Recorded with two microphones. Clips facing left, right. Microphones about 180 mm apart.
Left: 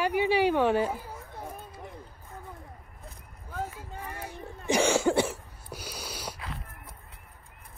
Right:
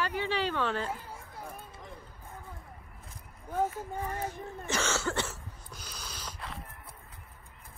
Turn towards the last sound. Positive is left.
turn(degrees=5)  # may be behind; listen again after turning